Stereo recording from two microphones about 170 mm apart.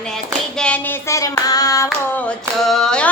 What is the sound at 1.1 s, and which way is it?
Hands, 20° left (ahead or behind).